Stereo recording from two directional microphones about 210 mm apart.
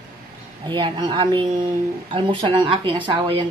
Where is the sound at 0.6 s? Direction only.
25° right (ahead or behind).